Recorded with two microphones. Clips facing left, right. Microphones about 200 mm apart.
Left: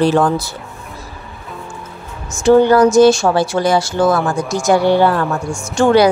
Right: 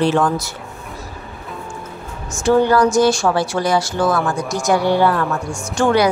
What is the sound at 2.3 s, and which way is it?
Speech, 25° left (ahead or behind).